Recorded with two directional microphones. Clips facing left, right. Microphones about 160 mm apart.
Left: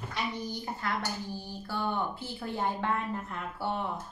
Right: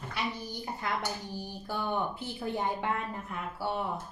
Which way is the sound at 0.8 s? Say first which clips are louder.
Even; 20° right (ahead or behind).